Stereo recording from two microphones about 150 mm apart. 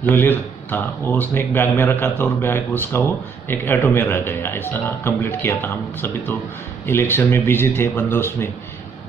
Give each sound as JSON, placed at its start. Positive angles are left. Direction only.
{"t": 0.0, "sound": "speech", "side_deg": 15}